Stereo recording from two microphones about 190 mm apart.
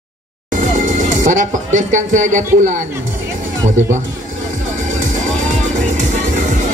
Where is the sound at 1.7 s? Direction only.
40° right (ahead or behind).